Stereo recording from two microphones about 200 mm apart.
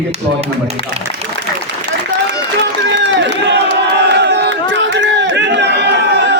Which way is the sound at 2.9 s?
60° right (ahead or behind).